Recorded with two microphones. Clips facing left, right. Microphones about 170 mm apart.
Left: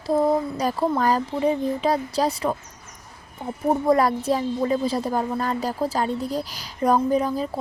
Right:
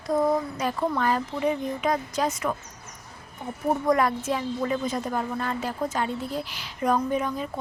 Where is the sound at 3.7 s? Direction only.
30° left (ahead or behind).